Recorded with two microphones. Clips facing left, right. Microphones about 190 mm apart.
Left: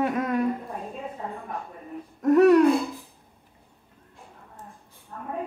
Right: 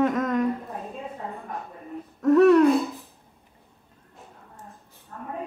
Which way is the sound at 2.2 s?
15° left (ahead or behind).